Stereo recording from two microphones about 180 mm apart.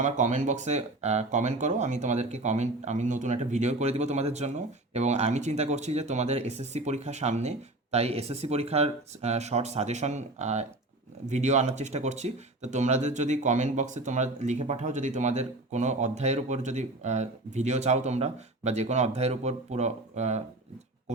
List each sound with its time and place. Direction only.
0.0 s speech: 40° right (ahead or behind)